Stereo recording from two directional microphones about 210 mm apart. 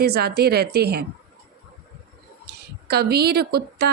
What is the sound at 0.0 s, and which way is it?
A woman's voice, 50° right (ahead or behind).